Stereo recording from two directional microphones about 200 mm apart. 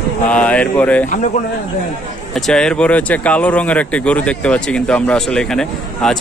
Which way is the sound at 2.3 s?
5° left (ahead or behind).